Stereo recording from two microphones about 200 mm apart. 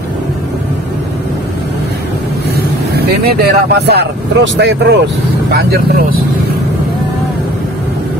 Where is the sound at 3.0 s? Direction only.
55° right (ahead or behind).